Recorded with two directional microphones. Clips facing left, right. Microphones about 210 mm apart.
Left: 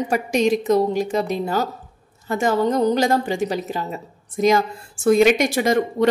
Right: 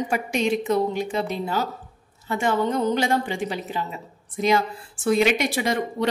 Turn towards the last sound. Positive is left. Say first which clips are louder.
# left 6 dB
turn(degrees=45)  # may be behind; listen again after turning